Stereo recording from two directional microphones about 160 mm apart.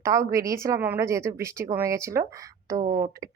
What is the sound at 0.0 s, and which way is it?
Speech, 20° right (ahead or behind).